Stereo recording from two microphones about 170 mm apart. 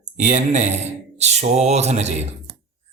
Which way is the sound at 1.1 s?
40° right (ahead or behind).